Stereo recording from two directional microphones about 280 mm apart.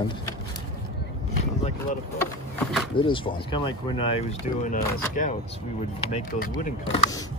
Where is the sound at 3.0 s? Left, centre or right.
Centre.